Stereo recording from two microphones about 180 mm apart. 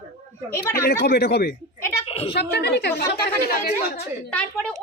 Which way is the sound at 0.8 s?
60° left (ahead or behind).